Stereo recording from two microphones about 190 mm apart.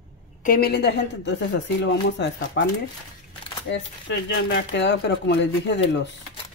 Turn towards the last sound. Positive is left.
turn(degrees=65)  # may be behind; listen again after turning